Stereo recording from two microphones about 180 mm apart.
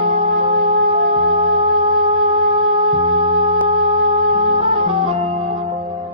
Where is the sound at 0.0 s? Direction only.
30° right (ahead or behind).